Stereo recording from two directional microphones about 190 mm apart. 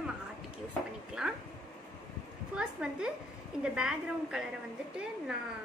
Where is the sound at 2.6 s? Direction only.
5° right (ahead or behind).